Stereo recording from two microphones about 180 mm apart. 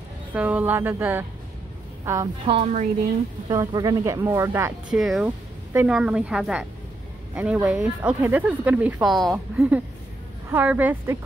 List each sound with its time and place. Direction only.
0.3 s speech: 10° right (ahead or behind)
2.4 s a woman's voice: 35° right (ahead or behind)
3.4 s speech: 20° right (ahead or behind)
4.9 s a woman's voice: centre (ahead or behind)